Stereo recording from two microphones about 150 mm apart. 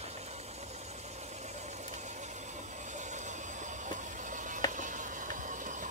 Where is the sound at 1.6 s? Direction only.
50° right (ahead or behind).